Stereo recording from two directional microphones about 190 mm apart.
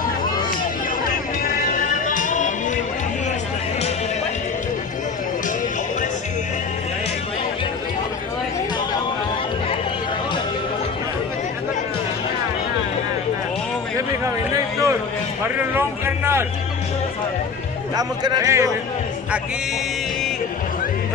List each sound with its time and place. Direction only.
1.4 s music: 45° left (ahead or behind)
13.9 s a sound: 15° right (ahead or behind)
17.9 s a man's voice: 20° right (ahead or behind)